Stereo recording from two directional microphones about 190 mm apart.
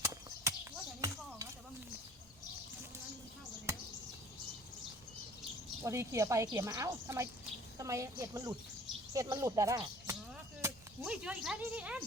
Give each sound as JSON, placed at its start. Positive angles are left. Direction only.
{"t": 0.0, "sound": "horse", "side_deg": -15}
{"t": 5.8, "sound": "a woman's voice", "side_deg": -15}
{"t": 10.6, "sound": "speech", "side_deg": -5}